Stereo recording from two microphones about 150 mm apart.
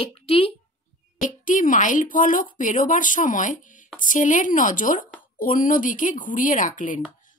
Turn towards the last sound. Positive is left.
turn(degrees=60)  # may be behind; listen again after turning